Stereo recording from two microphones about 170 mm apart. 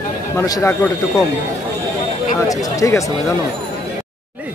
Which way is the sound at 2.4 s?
20° left (ahead or behind).